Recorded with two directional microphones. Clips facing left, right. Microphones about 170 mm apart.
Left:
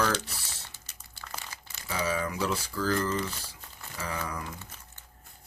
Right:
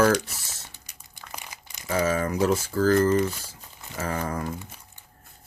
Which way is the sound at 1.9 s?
45° right (ahead or behind).